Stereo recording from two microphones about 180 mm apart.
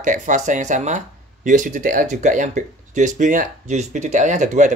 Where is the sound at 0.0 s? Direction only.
45° right (ahead or behind).